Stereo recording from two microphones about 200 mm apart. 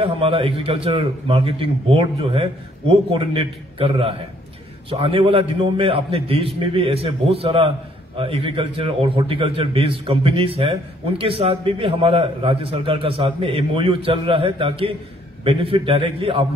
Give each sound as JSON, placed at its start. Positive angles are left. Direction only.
{"t": 0.0, "sound": "a man's voice", "side_deg": -30}